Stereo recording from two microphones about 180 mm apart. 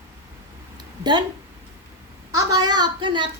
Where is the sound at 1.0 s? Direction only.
25° right (ahead or behind).